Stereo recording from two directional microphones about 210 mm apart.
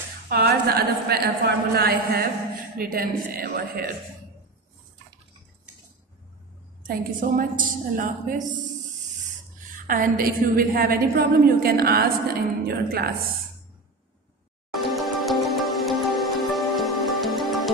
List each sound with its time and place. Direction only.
0.3 s a woman's voice: 50° right (ahead or behind)
6.9 s a woman's voice: 45° right (ahead or behind)
9.8 s a woman's voice: 40° right (ahead or behind)
14.7 s music: centre (ahead or behind)